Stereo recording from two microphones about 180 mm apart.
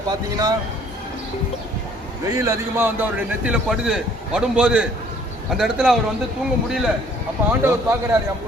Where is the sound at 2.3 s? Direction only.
20° right (ahead or behind); by 5.9 s centre (ahead or behind).